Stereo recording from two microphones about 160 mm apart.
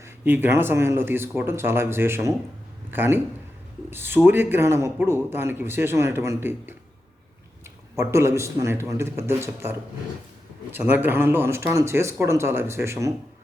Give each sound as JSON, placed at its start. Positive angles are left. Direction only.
{"t": 0.0, "sound": "speech", "side_deg": -15}
{"t": 7.9, "sound": "speech", "side_deg": -15}